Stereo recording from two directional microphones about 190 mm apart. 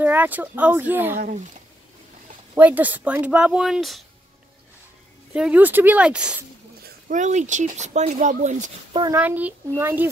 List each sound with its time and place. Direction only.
0.0 s speech: 10° right (ahead or behind)
1.1 s speech: 50° right (ahead or behind)
2.5 s speech: 10° right (ahead or behind)
5.3 s speech: 5° right (ahead or behind)
6.8 s a sound: 55° right (ahead or behind)
7.2 s speech: 40° right (ahead or behind)
9.1 s speech: 10° right (ahead or behind)